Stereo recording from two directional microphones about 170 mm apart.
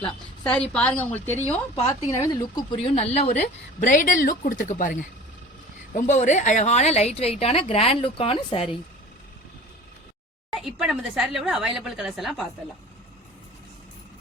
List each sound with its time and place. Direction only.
0.4 s a woman's voice: 5° left (ahead or behind); by 8.6 s 30° left (ahead or behind)
10.5 s speech: centre (ahead or behind)